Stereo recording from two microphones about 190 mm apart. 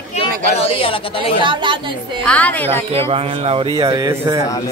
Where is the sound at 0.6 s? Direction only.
30° left (ahead or behind).